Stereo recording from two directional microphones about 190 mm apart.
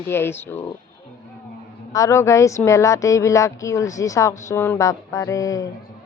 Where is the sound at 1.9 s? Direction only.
15° left (ahead or behind).